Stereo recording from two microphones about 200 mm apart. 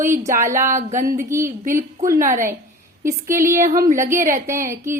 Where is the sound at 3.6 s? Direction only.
40° right (ahead or behind).